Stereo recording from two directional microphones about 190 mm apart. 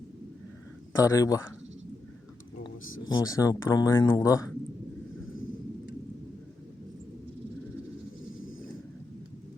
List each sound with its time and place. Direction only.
0.9 s speech: 20° left (ahead or behind)
3.1 s speech: 20° left (ahead or behind)